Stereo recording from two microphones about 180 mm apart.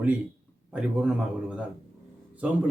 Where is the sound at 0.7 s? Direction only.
5° right (ahead or behind).